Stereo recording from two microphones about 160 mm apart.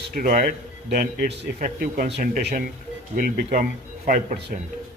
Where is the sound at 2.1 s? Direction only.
70° right (ahead or behind).